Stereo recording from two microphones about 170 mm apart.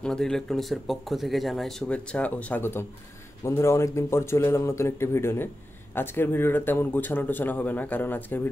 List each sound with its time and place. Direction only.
0.0 s a man's voice: 5° left (ahead or behind)